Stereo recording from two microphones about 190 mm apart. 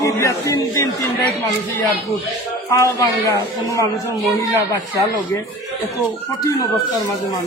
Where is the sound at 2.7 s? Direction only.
15° left (ahead or behind).